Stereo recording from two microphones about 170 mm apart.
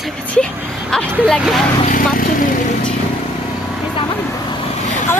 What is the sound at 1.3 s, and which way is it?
Speech, centre (ahead or behind).